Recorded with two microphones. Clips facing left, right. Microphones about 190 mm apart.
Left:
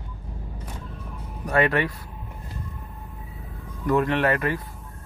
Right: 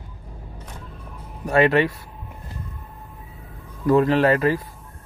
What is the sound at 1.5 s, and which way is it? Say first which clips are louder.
Speech: right 5 dB; 25° right (ahead or behind).